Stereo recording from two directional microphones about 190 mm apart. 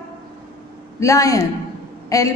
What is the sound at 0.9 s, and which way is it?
A woman's voice, 15° left (ahead or behind).